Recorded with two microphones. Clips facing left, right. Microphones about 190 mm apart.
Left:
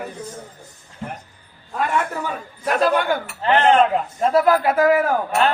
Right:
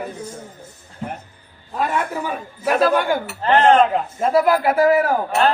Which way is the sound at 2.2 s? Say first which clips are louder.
Right 2 dB; 10° right (ahead or behind).